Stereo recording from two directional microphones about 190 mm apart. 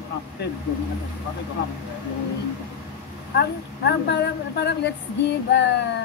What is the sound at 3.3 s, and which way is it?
Speech, 60° left (ahead or behind).